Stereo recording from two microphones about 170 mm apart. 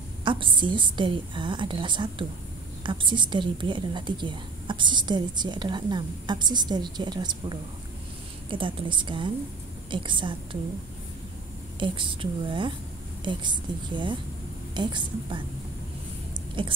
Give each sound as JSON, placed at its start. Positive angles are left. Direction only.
{"t": 0.2, "sound": "a woman's voice", "side_deg": -30}
{"t": 11.8, "sound": "a woman's voice", "side_deg": -30}
{"t": 16.6, "sound": "a woman's voice", "side_deg": -30}